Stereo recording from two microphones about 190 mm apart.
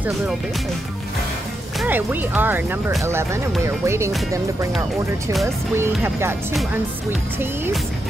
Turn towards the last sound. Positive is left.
turn(degrees=-15)  # may be behind; listen again after turning